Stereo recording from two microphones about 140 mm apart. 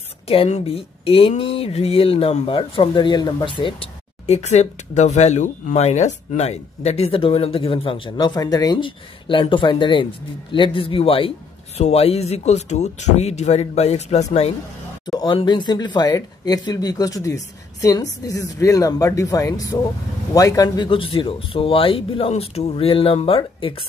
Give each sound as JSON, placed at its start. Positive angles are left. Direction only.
{"t": 0.3, "sound": "a man's voice", "side_deg": 45}
{"t": 15.1, "sound": "speech", "side_deg": 30}